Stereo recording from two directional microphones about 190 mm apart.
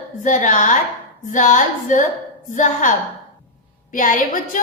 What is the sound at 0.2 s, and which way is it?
A woman's voice, 45° left (ahead or behind).